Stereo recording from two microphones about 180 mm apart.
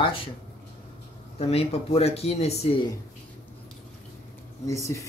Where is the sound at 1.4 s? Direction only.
35° left (ahead or behind).